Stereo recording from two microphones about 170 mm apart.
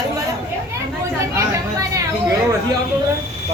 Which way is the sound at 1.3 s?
20° right (ahead or behind).